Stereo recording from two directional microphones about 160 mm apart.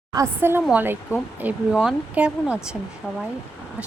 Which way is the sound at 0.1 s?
20° right (ahead or behind).